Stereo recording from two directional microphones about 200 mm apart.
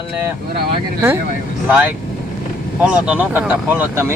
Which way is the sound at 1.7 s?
10° right (ahead or behind).